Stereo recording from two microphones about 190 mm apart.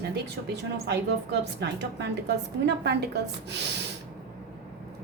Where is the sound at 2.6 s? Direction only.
60° right (ahead or behind).